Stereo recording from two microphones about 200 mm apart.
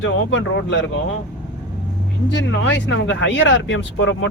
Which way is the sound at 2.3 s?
65° left (ahead or behind).